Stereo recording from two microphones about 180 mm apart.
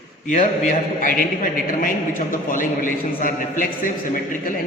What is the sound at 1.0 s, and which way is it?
A man's voice, 50° left (ahead or behind).